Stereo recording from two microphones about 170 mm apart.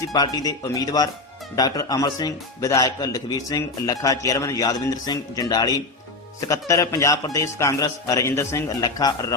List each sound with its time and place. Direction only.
0.1 s speech: 20° left (ahead or behind)